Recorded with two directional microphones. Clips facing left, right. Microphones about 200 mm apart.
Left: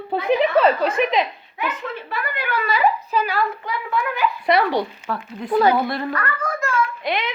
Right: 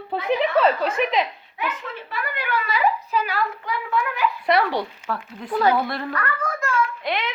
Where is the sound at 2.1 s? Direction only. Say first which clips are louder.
Even; 35° left (ahead or behind).